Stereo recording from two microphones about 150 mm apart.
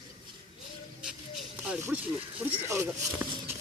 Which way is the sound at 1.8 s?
10° right (ahead or behind).